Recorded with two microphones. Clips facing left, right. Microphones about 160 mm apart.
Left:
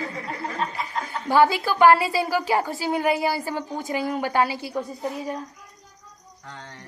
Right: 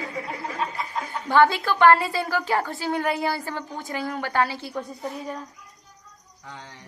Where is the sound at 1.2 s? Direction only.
10° left (ahead or behind).